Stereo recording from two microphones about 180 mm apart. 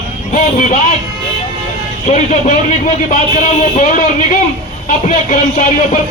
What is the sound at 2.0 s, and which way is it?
Speech, 40° left (ahead or behind).